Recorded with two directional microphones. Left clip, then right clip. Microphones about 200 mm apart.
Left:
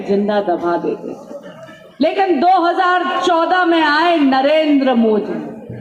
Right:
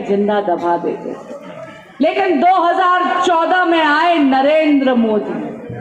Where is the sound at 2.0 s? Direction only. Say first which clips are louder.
Right 1 dB; 45° left (ahead or behind).